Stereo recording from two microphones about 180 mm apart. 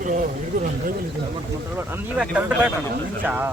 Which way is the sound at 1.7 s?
10° right (ahead or behind).